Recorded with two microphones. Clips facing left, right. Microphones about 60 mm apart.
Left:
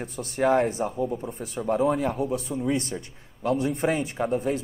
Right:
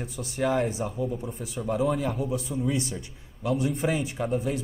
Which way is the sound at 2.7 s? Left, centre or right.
Left.